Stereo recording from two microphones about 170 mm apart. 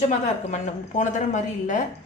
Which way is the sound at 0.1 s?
45° left (ahead or behind).